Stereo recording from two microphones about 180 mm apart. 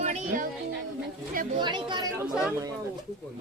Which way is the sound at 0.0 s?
40° right (ahead or behind).